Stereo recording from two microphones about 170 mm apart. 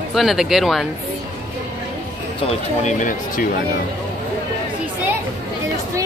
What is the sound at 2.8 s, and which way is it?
Speech, 50° left (ahead or behind).